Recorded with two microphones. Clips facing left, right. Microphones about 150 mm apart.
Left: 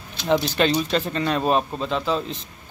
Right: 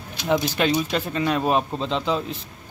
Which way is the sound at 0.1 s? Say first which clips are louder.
Left 1 dB; 10° right (ahead or behind).